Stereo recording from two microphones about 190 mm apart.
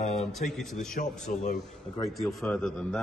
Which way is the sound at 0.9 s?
45° left (ahead or behind).